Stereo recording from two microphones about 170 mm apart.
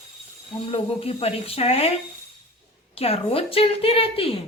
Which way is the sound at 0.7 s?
35° left (ahead or behind).